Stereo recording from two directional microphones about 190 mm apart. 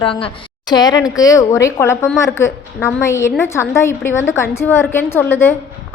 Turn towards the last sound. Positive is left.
turn(degrees=10)  # may be behind; listen again after turning